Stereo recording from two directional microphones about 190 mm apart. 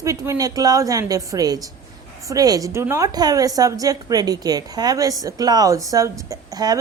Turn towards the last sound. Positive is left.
turn(degrees=-20)  # may be behind; listen again after turning